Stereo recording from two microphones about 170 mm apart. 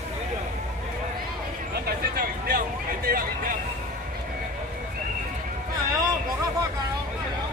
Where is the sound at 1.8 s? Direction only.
60° right (ahead or behind).